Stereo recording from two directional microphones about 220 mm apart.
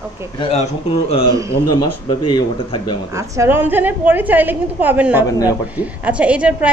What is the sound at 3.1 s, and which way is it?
A woman's voice, 15° right (ahead or behind).